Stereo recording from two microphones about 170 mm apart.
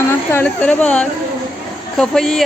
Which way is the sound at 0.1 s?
15° left (ahead or behind).